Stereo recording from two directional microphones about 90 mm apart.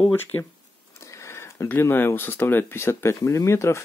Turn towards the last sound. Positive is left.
turn(degrees=30)  # may be behind; listen again after turning